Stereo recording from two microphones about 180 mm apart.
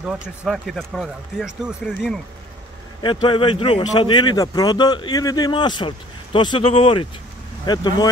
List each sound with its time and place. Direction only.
0.0 s speech: 5° right (ahead or behind)
3.0 s speech: 25° left (ahead or behind)